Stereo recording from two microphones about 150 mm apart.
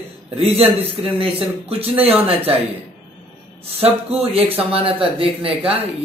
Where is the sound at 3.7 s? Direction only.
40° right (ahead or behind).